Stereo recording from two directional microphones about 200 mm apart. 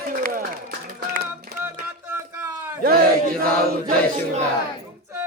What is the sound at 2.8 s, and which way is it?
Chant, 50° right (ahead or behind).